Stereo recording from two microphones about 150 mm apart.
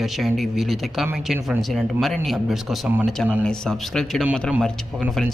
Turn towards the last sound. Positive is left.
turn(degrees=5)  # may be behind; listen again after turning